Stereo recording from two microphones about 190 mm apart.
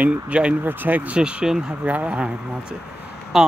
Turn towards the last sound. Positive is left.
turn(degrees=0)  # may be behind; listen again after turning